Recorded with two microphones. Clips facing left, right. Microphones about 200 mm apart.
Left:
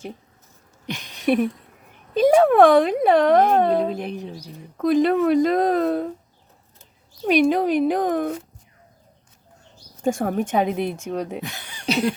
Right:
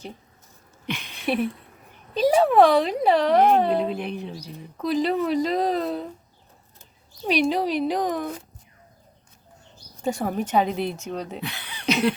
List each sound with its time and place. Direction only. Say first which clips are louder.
0.9 s a sound: left 5 dB; 45° left (ahead or behind)
2.1 s speech: left 3 dB; 50° left (ahead or behind)
7.3 s speech: left 4 dB; 50° left (ahead or behind)
10.0 s speech: left 4 dB; 50° left (ahead or behind)
11.9 s cough: even; 35° left (ahead or behind)